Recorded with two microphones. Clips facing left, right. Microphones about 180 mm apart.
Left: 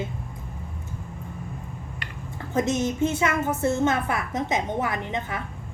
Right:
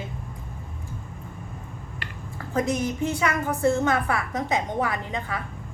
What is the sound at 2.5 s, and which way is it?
A woman's voice, 20° left (ahead or behind).